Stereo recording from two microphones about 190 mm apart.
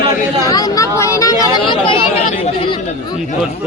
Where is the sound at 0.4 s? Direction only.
20° left (ahead or behind).